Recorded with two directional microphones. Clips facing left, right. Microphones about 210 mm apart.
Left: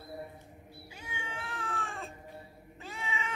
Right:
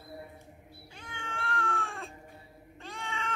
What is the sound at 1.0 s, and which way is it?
Cat, 10° left (ahead or behind).